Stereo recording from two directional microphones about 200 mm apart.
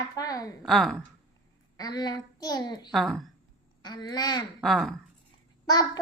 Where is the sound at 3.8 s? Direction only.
20° left (ahead or behind).